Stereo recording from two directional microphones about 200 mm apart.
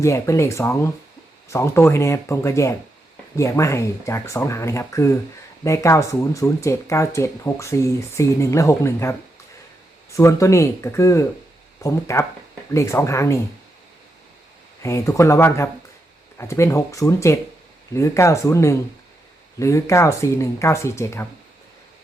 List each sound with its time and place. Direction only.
0.0 s speech: 15° left (ahead or behind)
14.8 s speech: 15° left (ahead or behind)